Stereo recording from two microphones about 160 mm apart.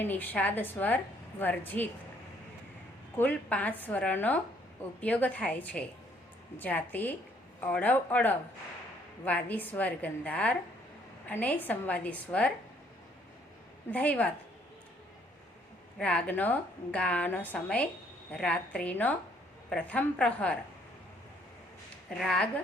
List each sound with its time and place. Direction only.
0.0 s a woman's voice: 10° left (ahead or behind)
3.2 s a woman's voice: 10° left (ahead or behind)
13.9 s a woman's voice: 10° left (ahead or behind)
16.0 s a woman's voice: 10° left (ahead or behind)
22.2 s speech: 5° left (ahead or behind)